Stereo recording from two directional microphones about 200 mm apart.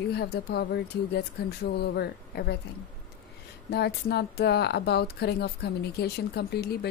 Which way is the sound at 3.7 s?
55° left (ahead or behind).